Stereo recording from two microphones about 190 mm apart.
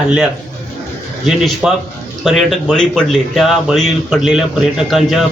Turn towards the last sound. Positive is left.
turn(degrees=0)  # may be behind; listen again after turning